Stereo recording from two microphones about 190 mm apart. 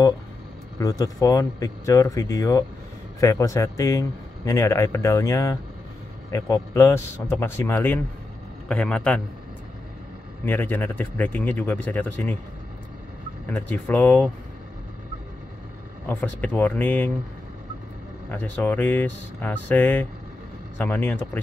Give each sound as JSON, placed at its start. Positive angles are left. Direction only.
{"t": 0.7, "sound": "speech", "side_deg": 20}
{"t": 10.4, "sound": "speech", "side_deg": 10}
{"t": 13.6, "sound": "speech", "side_deg": 10}
{"t": 16.1, "sound": "speech", "side_deg": 10}
{"t": 18.3, "sound": "speech", "side_deg": 10}